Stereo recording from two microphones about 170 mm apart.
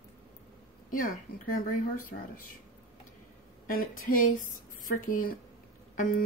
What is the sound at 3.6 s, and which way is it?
A woman's voice, 55° left (ahead or behind).